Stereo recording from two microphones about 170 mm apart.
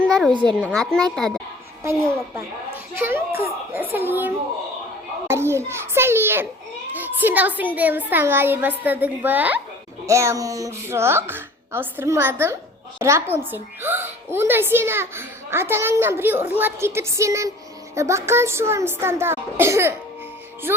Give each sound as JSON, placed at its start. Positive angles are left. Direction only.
{"t": 0.0, "sound": "a sound", "side_deg": 0}
{"t": 0.7, "sound": "speech", "side_deg": 5}
{"t": 1.8, "sound": "a woman's voice", "side_deg": -15}
{"t": 5.3, "sound": "a woman's voice", "side_deg": -15}